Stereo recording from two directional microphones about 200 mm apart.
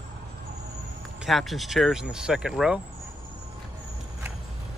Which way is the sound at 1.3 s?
Centre (ahead or behind).